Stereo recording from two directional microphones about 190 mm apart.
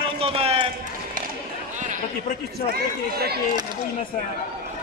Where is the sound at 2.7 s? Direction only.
55° right (ahead or behind).